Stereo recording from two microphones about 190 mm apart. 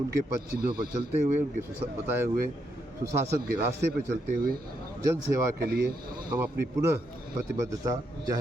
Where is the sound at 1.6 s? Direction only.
10° right (ahead or behind).